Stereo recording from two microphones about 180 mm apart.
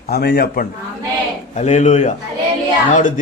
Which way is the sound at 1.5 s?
40° left (ahead or behind).